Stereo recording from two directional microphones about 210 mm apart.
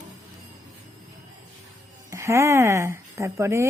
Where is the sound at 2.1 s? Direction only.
15° right (ahead or behind).